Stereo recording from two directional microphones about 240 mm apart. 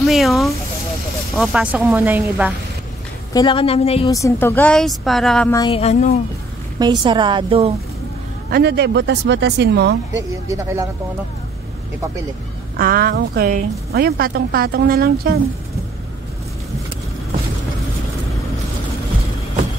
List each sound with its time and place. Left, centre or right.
0.0 s speech: centre
3.3 s a woman's voice: left
4.1 s speech: centre
5.5 s speech: centre
5.8 s a woman's voice: left
6.8 s a woman's voice: centre
8.5 s speech: right
10.5 s speech: centre
12.7 s a woman's voice: right